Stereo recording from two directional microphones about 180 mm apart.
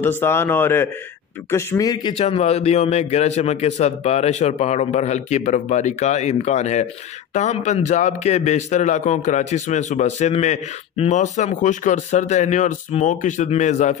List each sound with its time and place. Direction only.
0.0 s a man's voice: 10° left (ahead or behind)
2.1 s a man's voice: 35° left (ahead or behind)